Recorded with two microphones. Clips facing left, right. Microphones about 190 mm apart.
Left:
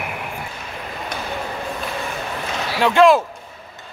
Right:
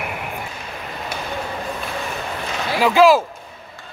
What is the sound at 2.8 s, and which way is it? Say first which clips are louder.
Speech: even; 5° right (ahead or behind).